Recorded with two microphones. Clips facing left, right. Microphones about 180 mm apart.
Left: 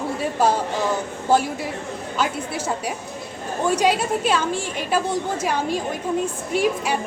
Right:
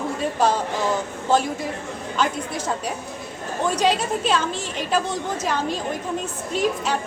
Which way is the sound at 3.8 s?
10° left (ahead or behind).